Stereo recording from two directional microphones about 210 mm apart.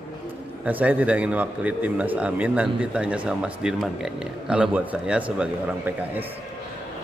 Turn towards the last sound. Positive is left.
turn(degrees=-5)  # may be behind; listen again after turning